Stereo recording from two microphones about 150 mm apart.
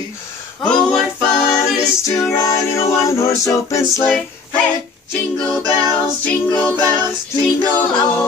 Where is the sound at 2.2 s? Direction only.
20° left (ahead or behind).